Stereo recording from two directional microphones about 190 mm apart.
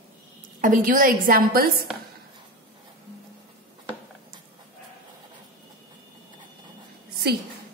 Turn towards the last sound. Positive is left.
turn(degrees=-55)  # may be behind; listen again after turning